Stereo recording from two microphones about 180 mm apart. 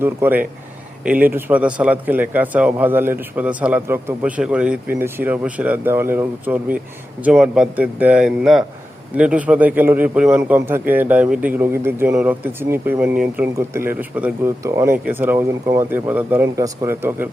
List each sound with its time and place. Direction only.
0.0 s speech: 10° right (ahead or behind)